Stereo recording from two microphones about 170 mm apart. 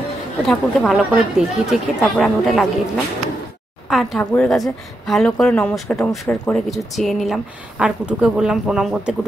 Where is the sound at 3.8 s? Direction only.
Centre (ahead or behind).